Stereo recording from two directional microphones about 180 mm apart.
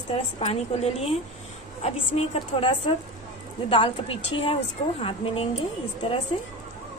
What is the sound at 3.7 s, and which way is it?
Speech, 30° left (ahead or behind).